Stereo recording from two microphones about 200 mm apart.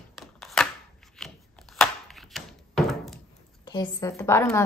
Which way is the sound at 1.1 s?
Centre (ahead or behind).